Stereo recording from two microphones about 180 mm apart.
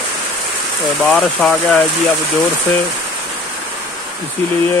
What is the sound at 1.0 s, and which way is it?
Speech, centre (ahead or behind).